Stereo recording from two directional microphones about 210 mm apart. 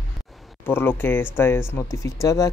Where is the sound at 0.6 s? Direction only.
10° left (ahead or behind).